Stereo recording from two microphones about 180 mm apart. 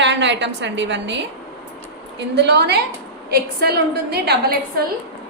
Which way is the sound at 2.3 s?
70° right (ahead or behind).